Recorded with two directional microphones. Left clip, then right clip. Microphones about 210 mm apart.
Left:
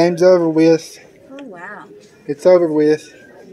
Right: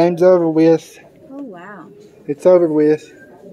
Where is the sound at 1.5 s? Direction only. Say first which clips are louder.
Left 2 dB; 45° right (ahead or behind).